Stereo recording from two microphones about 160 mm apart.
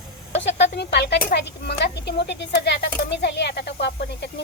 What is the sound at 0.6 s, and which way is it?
Speech, 90° left.